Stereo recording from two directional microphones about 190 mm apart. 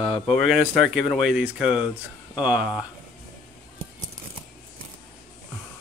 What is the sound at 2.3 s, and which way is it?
Mantra, 5° right (ahead or behind).